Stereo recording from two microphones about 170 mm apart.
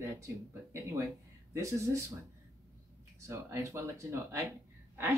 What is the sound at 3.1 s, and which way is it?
Speech, 15° right (ahead or behind).